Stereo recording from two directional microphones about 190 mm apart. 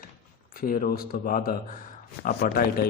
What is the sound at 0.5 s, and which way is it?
Speech, 50° left (ahead or behind).